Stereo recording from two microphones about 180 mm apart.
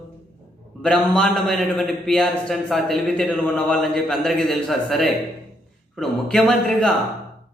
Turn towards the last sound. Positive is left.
turn(degrees=5)  # may be behind; listen again after turning